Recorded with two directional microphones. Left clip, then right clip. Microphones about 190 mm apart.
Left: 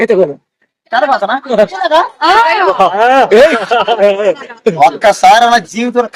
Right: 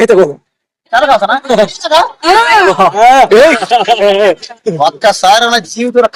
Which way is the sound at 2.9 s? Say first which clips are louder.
Right 3 dB; 60° right (ahead or behind).